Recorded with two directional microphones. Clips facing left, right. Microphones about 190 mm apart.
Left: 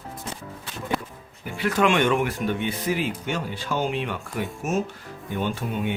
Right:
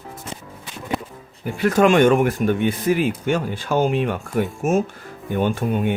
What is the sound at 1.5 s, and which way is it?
Speech, 45° right (ahead or behind).